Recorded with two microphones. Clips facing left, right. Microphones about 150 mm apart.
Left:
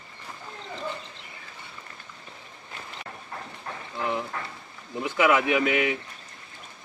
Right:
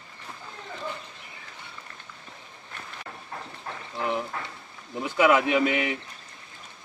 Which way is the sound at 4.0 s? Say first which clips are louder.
Right 1 dB; 15° right (ahead or behind).